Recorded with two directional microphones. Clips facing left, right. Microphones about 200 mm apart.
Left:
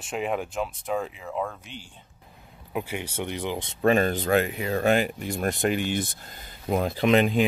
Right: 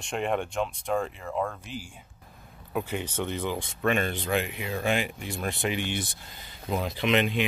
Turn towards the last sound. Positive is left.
turn(degrees=45)  # may be behind; listen again after turning